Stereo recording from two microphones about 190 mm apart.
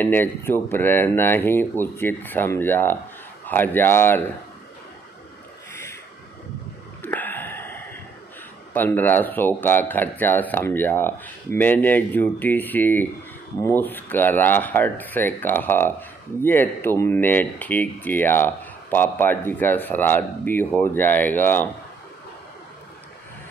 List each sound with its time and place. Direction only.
0.0 s speech: 10° left (ahead or behind)
7.0 s a sound: 10° left (ahead or behind)
8.7 s speech: 10° left (ahead or behind)